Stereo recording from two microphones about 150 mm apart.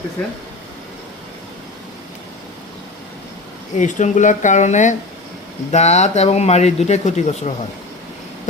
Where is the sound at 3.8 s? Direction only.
55° left (ahead or behind).